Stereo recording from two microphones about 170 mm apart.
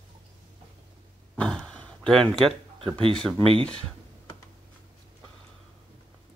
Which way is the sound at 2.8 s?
30° right (ahead or behind).